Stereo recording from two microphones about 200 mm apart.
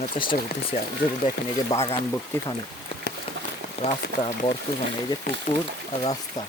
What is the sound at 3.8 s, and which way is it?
Speech, 30° left (ahead or behind).